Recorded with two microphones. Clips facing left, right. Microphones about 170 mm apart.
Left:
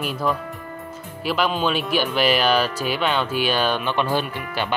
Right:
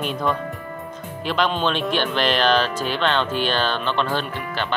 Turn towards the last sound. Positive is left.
turn(degrees=10)  # may be behind; listen again after turning